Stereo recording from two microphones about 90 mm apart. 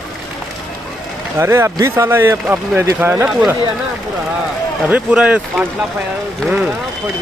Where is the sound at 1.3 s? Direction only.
30° right (ahead or behind).